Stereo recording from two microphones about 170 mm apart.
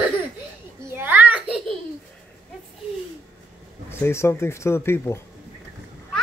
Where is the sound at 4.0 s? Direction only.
15° left (ahead or behind).